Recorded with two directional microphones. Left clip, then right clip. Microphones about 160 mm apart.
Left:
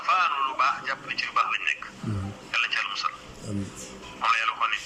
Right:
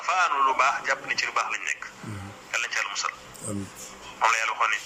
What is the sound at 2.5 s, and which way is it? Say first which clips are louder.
Telephone: left 1 dB; 40° right (ahead or behind).